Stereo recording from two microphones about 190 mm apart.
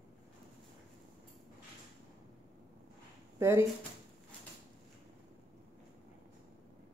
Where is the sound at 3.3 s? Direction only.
15° right (ahead or behind).